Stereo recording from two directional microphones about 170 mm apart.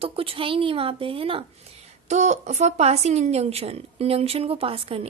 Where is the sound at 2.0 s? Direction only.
45° right (ahead or behind).